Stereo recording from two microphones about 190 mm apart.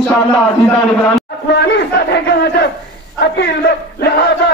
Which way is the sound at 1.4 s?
65° left (ahead or behind).